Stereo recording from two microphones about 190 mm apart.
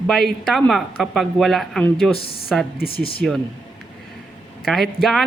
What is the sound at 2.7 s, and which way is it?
Speech, 55° left (ahead or behind).